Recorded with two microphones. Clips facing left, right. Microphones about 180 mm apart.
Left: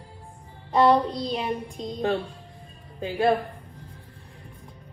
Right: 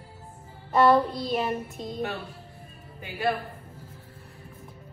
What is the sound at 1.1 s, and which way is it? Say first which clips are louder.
Speech: left 1 dB; 5° right (ahead or behind).